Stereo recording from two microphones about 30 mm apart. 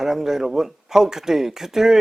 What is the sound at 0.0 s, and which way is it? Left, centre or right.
Speech, centre.